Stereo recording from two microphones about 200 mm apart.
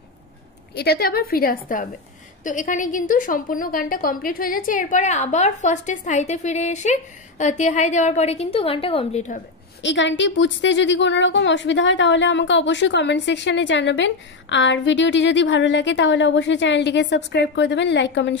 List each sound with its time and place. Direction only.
0.7 s a woman's voice: 50° left (ahead or behind); by 9.4 s 35° left (ahead or behind)
9.8 s a woman's voice: 65° left (ahead or behind)